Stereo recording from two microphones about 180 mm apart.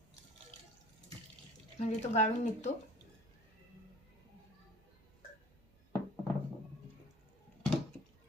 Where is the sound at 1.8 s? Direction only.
40° left (ahead or behind).